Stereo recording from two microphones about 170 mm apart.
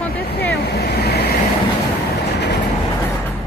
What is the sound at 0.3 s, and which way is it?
Vehicle, 70° left (ahead or behind).